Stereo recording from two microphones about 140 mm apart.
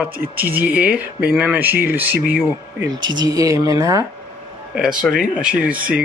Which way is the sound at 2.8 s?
30° right (ahead or behind).